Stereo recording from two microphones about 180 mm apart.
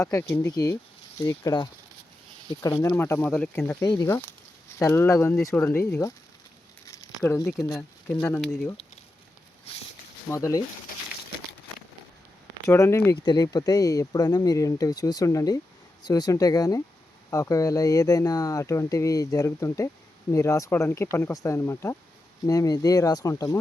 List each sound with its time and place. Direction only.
0.0 s speech: 15° left (ahead or behind)
2.9 s speech: 10° left (ahead or behind)
6.8 s a sound: 20° left (ahead or behind)
7.3 s speech: 15° left (ahead or behind)
10.2 s speech: 15° left (ahead or behind)
12.6 s speech: 15° left (ahead or behind)